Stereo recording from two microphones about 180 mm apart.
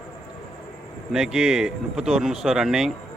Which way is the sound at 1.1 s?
5° right (ahead or behind).